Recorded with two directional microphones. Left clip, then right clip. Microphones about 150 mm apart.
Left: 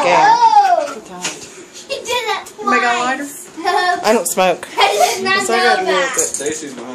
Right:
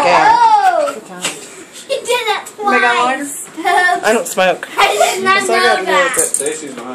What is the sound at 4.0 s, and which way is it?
A woman's voice, 25° left (ahead or behind).